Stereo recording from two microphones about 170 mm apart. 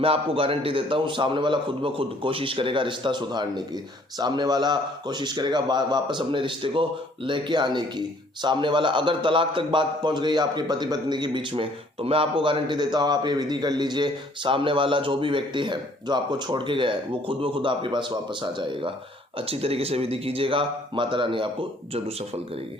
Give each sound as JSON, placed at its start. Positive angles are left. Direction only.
{"t": 0.0, "sound": "a man's voice", "side_deg": -35}